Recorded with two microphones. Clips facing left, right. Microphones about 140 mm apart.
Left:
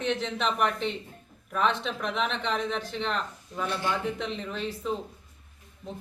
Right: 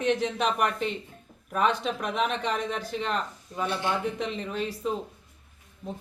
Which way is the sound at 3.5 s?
15° right (ahead or behind).